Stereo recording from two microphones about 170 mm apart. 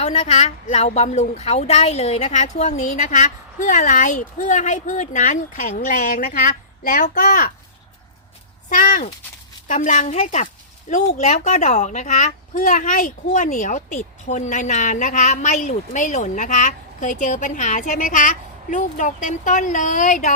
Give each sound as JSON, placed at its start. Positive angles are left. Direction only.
{"t": 0.0, "sound": "speech", "side_deg": 40}
{"t": 8.7, "sound": "speech", "side_deg": 50}